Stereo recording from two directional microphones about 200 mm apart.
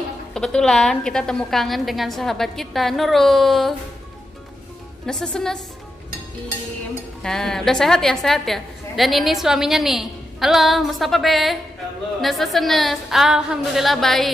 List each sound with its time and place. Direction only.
0.3 s a woman's voice: 5° left (ahead or behind)
5.0 s a woman's voice: 5° left (ahead or behind)
7.2 s a woman's voice: centre (ahead or behind)